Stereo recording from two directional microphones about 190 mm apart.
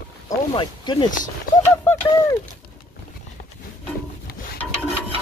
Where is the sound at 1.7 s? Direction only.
15° left (ahead or behind).